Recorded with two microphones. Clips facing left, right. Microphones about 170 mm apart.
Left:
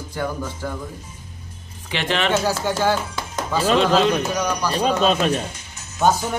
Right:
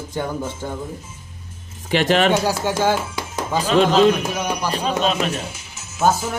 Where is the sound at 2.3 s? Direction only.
15° right (ahead or behind).